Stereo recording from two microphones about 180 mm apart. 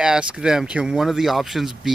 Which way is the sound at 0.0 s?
5° right (ahead or behind).